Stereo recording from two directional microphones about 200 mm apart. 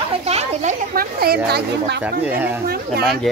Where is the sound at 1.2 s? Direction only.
50° right (ahead or behind).